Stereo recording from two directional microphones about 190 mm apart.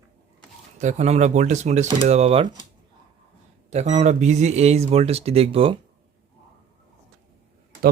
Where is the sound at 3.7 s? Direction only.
35° right (ahead or behind).